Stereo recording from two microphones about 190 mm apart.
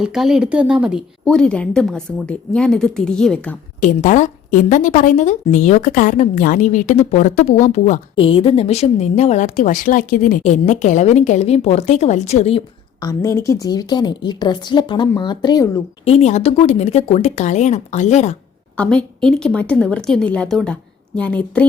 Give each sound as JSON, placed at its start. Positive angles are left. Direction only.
{"t": 0.0, "sound": "a woman's voice", "side_deg": -5}
{"t": 3.8, "sound": "speech", "side_deg": 40}
{"t": 8.1, "sound": "speech", "side_deg": 30}
{"t": 13.1, "sound": "a woman's voice", "side_deg": 15}
{"t": 16.0, "sound": "speech", "side_deg": 35}
{"t": 18.8, "sound": "a woman's voice", "side_deg": 5}